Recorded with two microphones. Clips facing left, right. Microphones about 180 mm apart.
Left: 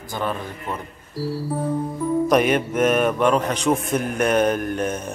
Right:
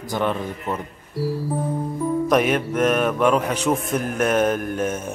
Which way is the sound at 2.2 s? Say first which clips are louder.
Left 1 dB; centre (ahead or behind).